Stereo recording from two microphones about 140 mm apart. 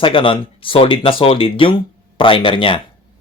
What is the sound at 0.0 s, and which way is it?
Speech, 40° left (ahead or behind).